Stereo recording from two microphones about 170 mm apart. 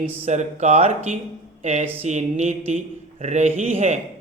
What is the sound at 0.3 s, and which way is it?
Speech, 40° right (ahead or behind).